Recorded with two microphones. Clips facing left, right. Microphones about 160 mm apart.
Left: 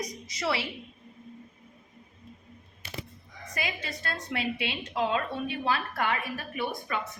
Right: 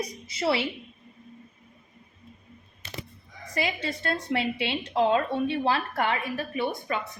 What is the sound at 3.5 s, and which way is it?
A woman's voice, 30° right (ahead or behind).